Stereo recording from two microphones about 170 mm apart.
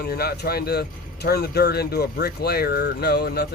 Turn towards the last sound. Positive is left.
turn(degrees=70)  # may be behind; listen again after turning